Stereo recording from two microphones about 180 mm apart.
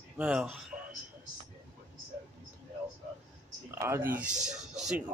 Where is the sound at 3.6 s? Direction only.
15° right (ahead or behind).